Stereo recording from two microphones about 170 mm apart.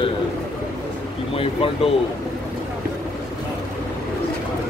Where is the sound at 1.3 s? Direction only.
35° left (ahead or behind).